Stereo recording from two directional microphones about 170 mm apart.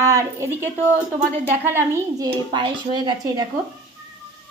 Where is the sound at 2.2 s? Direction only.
25° right (ahead or behind).